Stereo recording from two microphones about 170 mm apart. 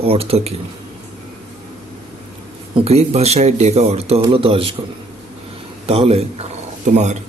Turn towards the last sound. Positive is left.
turn(degrees=-40)  # may be behind; listen again after turning